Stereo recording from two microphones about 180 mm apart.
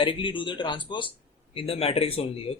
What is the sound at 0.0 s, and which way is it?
Speech, 30° left (ahead or behind).